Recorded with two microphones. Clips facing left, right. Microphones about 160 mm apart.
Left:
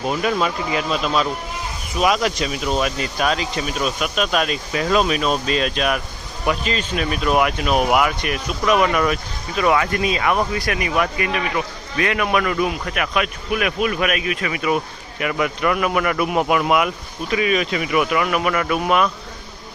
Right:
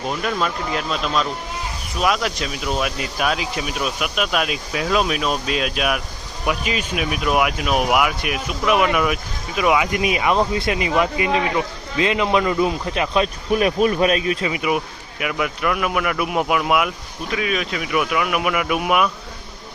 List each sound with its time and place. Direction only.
0.1 s speech: 5° left (ahead or behind); by 14.5 s 30° right (ahead or behind)
14.5 s speech: 15° right (ahead or behind)
15.2 s speech: centre (ahead or behind)